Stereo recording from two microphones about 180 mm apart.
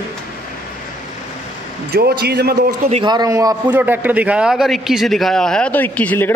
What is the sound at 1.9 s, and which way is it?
Speech, 60° right (ahead or behind).